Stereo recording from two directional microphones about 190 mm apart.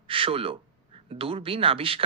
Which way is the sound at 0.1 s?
30° right (ahead or behind).